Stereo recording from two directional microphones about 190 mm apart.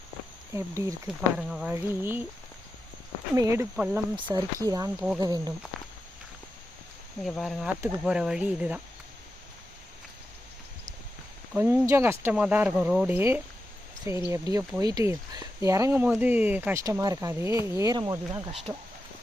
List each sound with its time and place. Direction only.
0.5 s speech: 15° right (ahead or behind)
1.0 s insect: 5° right (ahead or behind)
1.7 s speech: 10° right (ahead or behind)
3.3 s speech: 15° right (ahead or behind)
4.1 s speech: 20° right (ahead or behind)
4.9 s insect: 5° right (ahead or behind)
5.2 s speech: 20° right (ahead or behind)
7.3 s insect: centre (ahead or behind)
8.0 s speech: 5° right (ahead or behind)
11.5 s speech: 10° right (ahead or behind)